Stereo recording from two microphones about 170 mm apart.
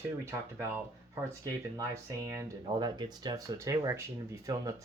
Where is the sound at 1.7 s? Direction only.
15° right (ahead or behind).